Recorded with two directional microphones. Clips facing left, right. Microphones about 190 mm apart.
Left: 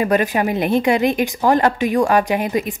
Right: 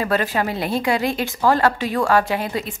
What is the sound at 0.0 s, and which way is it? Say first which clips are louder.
A woman's voice: left 4 dB; 15° left (ahead or behind).